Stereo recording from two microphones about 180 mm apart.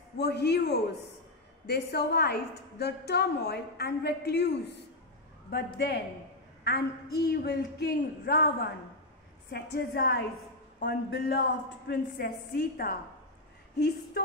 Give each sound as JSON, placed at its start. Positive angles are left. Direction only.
{"t": 0.2, "sound": "a woman's voice", "side_deg": 65}
{"t": 5.8, "sound": "a woman's voice", "side_deg": 70}
{"t": 9.5, "sound": "a woman's voice", "side_deg": 70}